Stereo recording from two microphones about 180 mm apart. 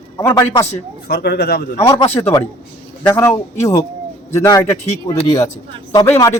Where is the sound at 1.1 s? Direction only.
65° left (ahead or behind).